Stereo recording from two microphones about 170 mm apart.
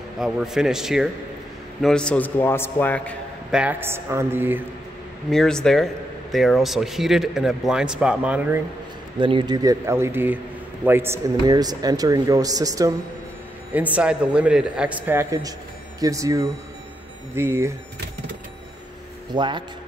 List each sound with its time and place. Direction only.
0.2 s a man's voice: 5° right (ahead or behind)
3.5 s a man's voice: 10° right (ahead or behind)
5.3 s speech: 5° left (ahead or behind)
9.2 s a man's voice: 25° right (ahead or behind)
13.7 s a man's voice: 10° right (ahead or behind)
19.3 s a man's voice: 25° right (ahead or behind)